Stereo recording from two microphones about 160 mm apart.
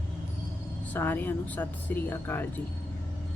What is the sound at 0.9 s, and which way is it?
Speech, 10° left (ahead or behind).